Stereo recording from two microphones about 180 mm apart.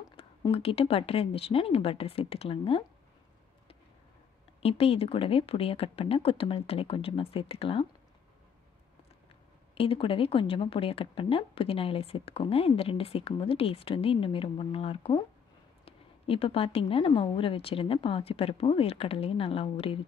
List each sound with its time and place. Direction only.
0.1 s a woman's voice: 30° left (ahead or behind)
4.6 s a woman's voice: 35° left (ahead or behind)
9.8 s a woman's voice: 30° left (ahead or behind)